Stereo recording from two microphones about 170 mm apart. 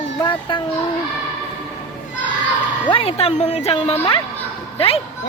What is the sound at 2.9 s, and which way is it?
Speech, 35° left (ahead or behind).